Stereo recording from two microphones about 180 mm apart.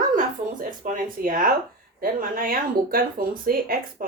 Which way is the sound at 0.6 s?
50° right (ahead or behind).